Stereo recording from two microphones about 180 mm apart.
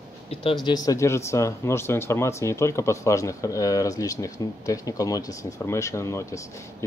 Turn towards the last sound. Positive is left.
turn(degrees=15)  # may be behind; listen again after turning